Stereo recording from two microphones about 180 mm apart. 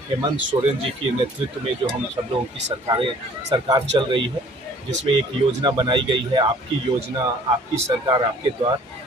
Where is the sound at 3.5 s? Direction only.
25° right (ahead or behind).